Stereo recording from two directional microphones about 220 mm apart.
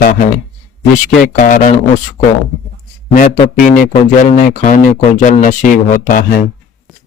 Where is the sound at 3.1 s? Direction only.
35° left (ahead or behind).